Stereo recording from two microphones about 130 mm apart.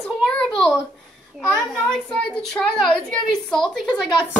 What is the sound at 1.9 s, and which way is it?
A child's voice, 5° left (ahead or behind).